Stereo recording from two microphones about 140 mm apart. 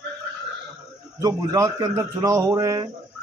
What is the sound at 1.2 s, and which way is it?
Speech, 25° right (ahead or behind).